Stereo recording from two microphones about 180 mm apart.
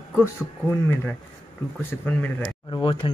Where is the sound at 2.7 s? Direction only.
30° left (ahead or behind).